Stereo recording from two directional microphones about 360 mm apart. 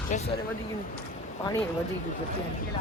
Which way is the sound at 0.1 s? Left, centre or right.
Left.